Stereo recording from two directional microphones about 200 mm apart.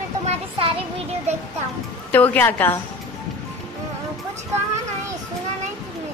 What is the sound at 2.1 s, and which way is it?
Speech, 10° left (ahead or behind).